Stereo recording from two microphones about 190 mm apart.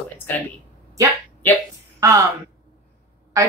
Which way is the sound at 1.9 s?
15° right (ahead or behind).